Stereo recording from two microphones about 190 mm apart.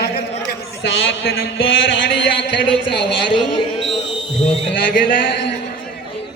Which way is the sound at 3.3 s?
25° left (ahead or behind).